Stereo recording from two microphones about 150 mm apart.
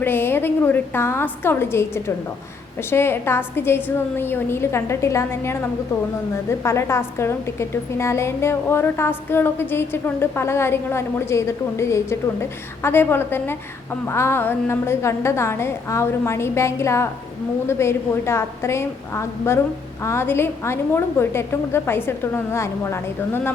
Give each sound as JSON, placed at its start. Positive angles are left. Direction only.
{"t": 0.0, "sound": "a woman's voice", "side_deg": 15}